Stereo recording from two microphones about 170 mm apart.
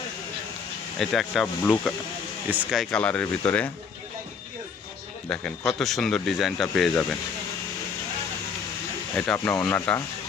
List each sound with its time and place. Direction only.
0.9 s speech: centre (ahead or behind)
5.3 s speech: centre (ahead or behind)
9.1 s speech: 10° left (ahead or behind)